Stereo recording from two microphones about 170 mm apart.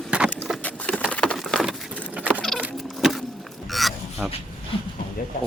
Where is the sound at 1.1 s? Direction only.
5° left (ahead or behind).